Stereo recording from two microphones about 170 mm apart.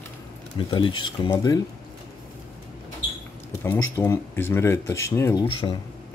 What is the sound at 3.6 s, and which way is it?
Speech, 15° left (ahead or behind).